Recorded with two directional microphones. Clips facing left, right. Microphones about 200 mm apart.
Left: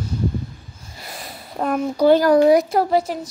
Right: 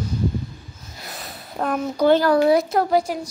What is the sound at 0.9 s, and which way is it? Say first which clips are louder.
A child's voice: left 1 dB; 10° left (ahead or behind).